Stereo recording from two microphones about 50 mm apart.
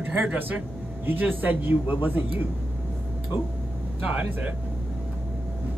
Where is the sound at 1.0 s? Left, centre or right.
Right.